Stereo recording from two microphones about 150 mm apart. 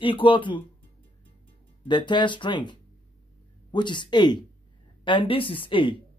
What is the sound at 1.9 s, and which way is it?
Speech, 30° left (ahead or behind).